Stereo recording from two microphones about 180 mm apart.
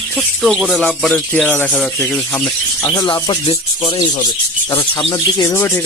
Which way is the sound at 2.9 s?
25° left (ahead or behind).